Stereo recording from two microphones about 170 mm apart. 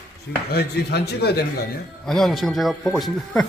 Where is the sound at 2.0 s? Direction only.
Centre (ahead or behind).